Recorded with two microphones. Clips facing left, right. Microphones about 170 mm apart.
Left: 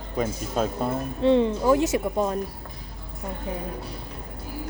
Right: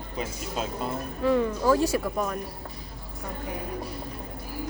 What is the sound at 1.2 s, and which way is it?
Speech, 25° left (ahead or behind).